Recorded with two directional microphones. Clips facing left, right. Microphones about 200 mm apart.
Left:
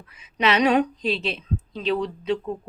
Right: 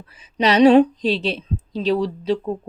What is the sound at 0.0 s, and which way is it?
A woman's voice, 35° right (ahead or behind).